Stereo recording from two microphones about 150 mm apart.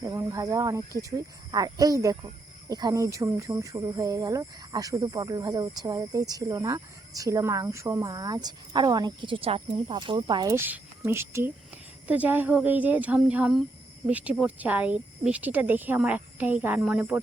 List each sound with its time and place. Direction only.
0.0 s speech: 20° right (ahead or behind)
10.5 s a woman's voice: 15° right (ahead or behind)